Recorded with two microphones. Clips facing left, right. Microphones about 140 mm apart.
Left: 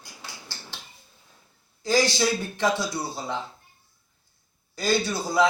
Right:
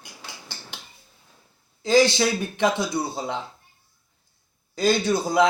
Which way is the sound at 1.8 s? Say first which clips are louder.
Right 4 dB; 20° right (ahead or behind).